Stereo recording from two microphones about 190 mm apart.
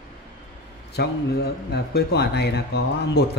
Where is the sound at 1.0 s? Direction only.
60° left (ahead or behind).